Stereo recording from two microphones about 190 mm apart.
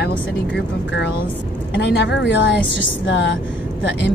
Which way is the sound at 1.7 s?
65° left (ahead or behind).